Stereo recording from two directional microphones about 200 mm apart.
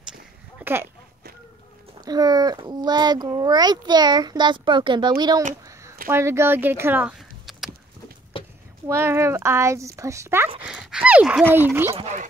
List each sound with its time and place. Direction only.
0.6 s a sound: 10° right (ahead or behind)
2.0 s a child's voice: 20° right (ahead or behind)
5.7 s a sound: 15° right (ahead or behind)
6.0 s speech: 10° right (ahead or behind)
8.8 s speech: 10° right (ahead or behind)
11.9 s speech: 35° right (ahead or behind)